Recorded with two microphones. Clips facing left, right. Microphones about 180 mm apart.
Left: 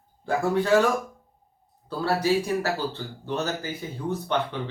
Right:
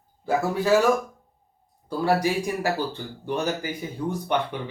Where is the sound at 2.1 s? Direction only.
15° right (ahead or behind).